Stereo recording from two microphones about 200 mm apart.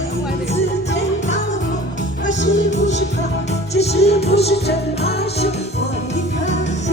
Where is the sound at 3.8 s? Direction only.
30° left (ahead or behind).